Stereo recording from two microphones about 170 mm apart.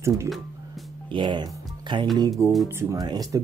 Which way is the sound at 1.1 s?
25° right (ahead or behind).